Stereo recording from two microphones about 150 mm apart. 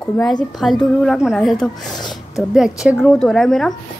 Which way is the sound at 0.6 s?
Centre (ahead or behind).